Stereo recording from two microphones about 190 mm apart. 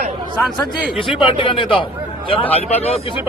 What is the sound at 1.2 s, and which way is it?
A man's voice, 30° left (ahead or behind).